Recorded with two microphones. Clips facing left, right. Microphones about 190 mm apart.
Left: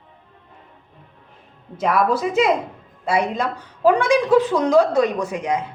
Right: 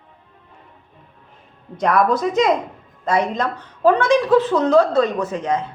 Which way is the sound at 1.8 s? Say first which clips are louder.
Right 2 dB; 5° left (ahead or behind).